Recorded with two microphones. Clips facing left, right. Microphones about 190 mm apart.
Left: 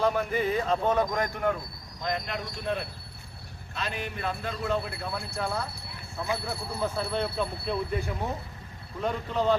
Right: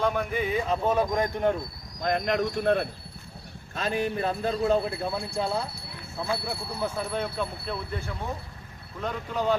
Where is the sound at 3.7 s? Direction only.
40° right (ahead or behind).